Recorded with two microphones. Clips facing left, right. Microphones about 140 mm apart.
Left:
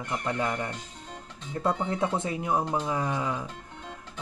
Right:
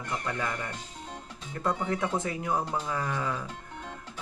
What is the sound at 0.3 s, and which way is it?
Speech, 30° left (ahead or behind).